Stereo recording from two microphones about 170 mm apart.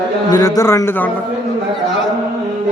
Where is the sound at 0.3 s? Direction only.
20° left (ahead or behind).